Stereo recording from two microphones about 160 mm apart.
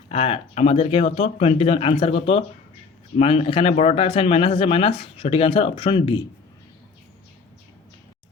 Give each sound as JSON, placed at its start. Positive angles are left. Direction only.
{"t": 0.1, "sound": "speech", "side_deg": 40}